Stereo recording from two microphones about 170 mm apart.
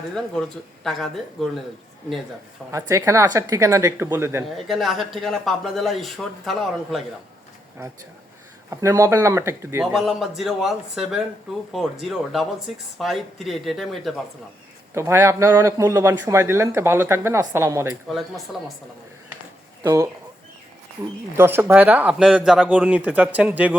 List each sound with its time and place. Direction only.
0.9 s speech: centre (ahead or behind)
2.7 s a man's voice: 20° right (ahead or behind)
4.5 s speech: centre (ahead or behind)
8.7 s a man's voice: 15° right (ahead or behind)
9.8 s speech: centre (ahead or behind)
14.9 s a man's voice: 15° right (ahead or behind)
18.1 s speech: centre (ahead or behind)
19.8 s speech: 15° right (ahead or behind)
21.3 s a man's voice: 15° right (ahead or behind)